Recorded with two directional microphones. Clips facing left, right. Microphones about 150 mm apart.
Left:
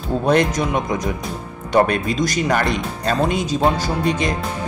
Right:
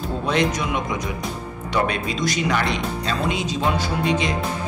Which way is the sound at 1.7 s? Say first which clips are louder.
Left 6 dB; 50° left (ahead or behind).